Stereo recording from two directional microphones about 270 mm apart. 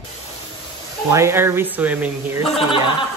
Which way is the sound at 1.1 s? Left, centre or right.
Centre.